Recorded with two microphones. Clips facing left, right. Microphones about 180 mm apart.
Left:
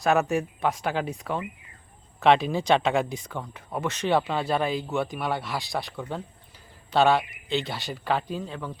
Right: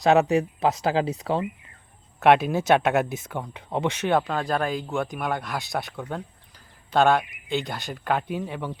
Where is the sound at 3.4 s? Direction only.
15° right (ahead or behind).